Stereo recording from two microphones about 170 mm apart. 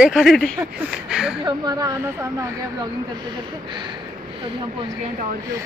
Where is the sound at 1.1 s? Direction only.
5° right (ahead or behind).